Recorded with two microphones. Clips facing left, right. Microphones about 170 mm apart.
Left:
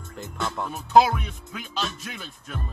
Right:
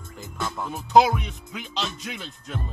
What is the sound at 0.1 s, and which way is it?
Music, centre (ahead or behind).